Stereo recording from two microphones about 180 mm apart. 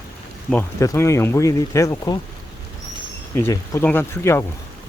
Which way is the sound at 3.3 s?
15° left (ahead or behind).